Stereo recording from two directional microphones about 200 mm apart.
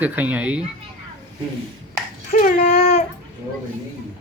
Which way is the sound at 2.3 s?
40° left (ahead or behind).